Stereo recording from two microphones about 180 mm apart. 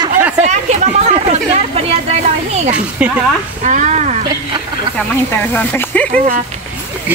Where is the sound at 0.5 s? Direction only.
40° right (ahead or behind).